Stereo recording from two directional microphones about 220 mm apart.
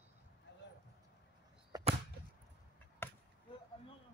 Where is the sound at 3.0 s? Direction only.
10° left (ahead or behind).